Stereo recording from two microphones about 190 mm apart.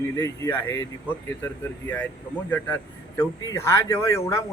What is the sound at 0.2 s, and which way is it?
Speech, 15° left (ahead or behind).